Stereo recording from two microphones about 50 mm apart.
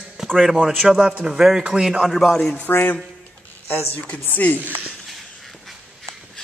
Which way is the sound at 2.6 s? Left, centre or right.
Left.